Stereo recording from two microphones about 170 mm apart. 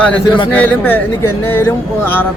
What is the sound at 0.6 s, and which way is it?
Speech, 10° left (ahead or behind).